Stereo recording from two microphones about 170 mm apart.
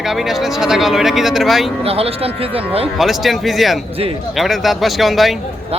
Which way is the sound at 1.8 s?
35° right (ahead or behind).